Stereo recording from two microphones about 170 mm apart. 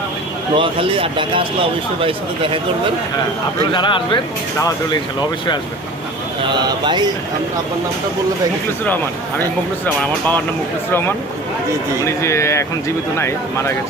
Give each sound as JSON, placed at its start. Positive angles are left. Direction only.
{"t": 0.5, "sound": "speech", "side_deg": -30}
{"t": 3.7, "sound": "speech", "side_deg": 30}
{"t": 6.7, "sound": "speech", "side_deg": -25}
{"t": 9.4, "sound": "speech", "side_deg": 10}
{"t": 12.0, "sound": "speech", "side_deg": 15}